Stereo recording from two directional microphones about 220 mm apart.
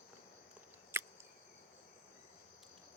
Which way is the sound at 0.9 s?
10° right (ahead or behind).